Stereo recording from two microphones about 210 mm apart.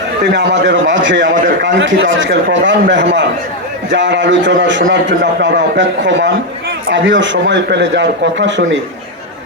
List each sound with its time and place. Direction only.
0.3 s speech: 55° right (ahead or behind)